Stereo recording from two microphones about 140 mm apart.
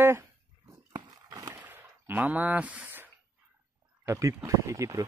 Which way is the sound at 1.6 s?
15° right (ahead or behind).